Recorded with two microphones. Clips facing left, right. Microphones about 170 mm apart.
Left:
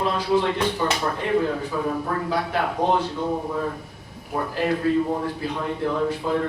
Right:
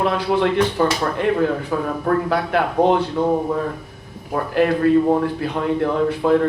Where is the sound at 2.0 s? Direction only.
65° right (ahead or behind).